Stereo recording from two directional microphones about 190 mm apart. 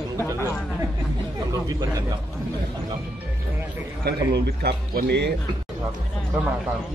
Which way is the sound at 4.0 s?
60° right (ahead or behind).